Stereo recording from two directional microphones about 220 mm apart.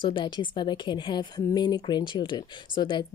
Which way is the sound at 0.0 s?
20° left (ahead or behind).